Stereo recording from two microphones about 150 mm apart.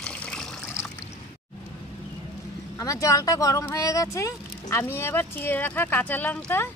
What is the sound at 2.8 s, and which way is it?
Speech, 20° left (ahead or behind).